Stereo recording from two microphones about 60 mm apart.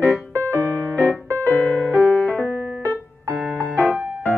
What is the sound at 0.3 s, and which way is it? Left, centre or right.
Music, left.